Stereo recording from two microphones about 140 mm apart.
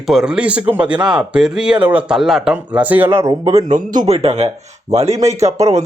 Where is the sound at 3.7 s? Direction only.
55° right (ahead or behind).